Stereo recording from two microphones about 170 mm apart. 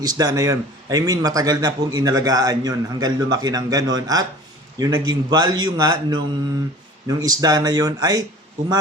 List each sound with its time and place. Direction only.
0.0 s a man's voice: 20° right (ahead or behind)